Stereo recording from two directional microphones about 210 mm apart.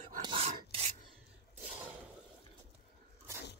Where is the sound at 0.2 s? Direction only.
25° right (ahead or behind).